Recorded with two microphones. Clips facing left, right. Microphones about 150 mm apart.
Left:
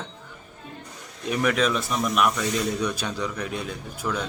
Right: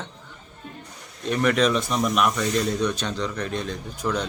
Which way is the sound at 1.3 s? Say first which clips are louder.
Right 2 dB; 5° left (ahead or behind).